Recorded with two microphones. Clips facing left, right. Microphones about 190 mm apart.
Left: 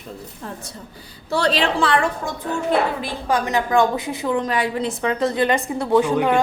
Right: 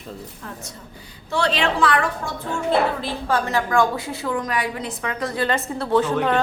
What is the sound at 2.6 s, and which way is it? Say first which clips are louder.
A woman's voice: right 1 dB; 15° left (ahead or behind).